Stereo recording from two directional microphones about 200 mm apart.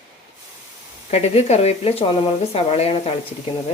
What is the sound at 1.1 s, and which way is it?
Speech, 30° left (ahead or behind).